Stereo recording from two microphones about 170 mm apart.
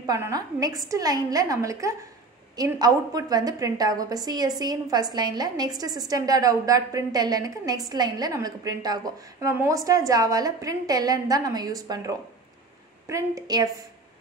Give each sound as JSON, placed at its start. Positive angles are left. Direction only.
{"t": 0.0, "sound": "a woman's voice", "side_deg": -20}